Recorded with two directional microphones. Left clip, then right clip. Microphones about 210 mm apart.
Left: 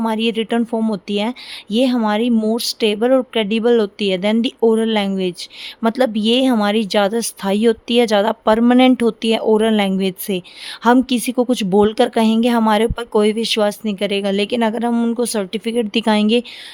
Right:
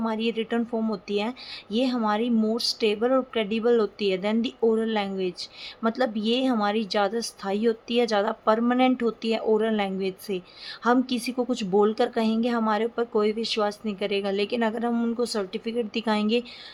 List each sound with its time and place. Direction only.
0.0 s a woman's voice: 50° left (ahead or behind)